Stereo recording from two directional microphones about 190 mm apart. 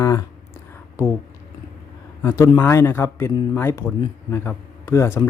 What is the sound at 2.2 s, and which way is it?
A man's voice, 15° left (ahead or behind).